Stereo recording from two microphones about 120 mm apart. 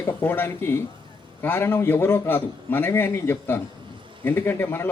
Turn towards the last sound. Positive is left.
turn(degrees=20)  # may be behind; listen again after turning